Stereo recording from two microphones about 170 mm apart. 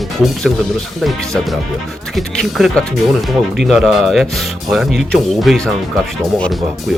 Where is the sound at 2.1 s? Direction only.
Centre (ahead or behind).